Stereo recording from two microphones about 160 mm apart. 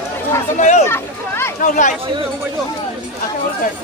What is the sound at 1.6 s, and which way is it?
Speech, 50° left (ahead or behind).